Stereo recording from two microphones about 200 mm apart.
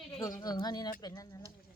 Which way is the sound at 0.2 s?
20° left (ahead or behind).